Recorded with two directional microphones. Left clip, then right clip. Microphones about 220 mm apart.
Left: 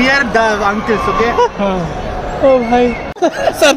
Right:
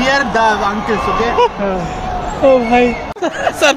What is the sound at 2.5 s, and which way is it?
A man's voice, 5° right (ahead or behind).